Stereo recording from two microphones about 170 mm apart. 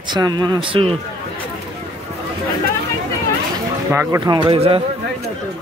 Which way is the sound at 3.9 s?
20° right (ahead or behind).